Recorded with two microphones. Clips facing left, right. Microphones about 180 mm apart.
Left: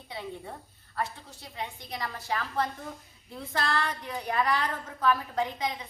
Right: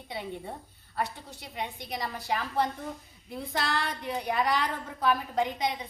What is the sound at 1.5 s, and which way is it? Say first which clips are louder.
A woman's voice: right 2 dB; 20° right (ahead or behind).